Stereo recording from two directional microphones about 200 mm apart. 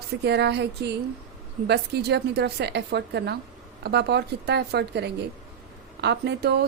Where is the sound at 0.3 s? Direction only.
55° right (ahead or behind).